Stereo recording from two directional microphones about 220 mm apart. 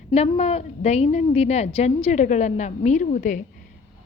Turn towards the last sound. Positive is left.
turn(degrees=35)  # may be behind; listen again after turning